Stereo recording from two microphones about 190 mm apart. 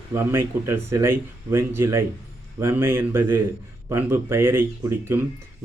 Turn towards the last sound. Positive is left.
turn(degrees=-10)  # may be behind; listen again after turning